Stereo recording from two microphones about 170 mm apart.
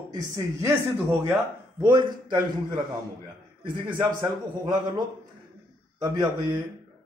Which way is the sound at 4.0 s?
25° right (ahead or behind).